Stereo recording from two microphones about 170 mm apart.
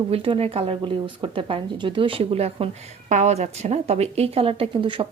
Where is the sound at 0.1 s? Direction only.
35° right (ahead or behind).